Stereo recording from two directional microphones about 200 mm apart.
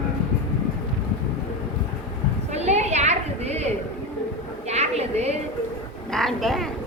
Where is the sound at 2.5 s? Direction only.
35° right (ahead or behind).